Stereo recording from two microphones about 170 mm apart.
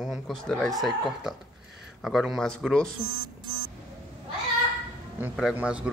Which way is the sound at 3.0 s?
30° right (ahead or behind).